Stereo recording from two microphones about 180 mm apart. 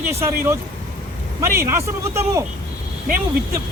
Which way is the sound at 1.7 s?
15° right (ahead or behind).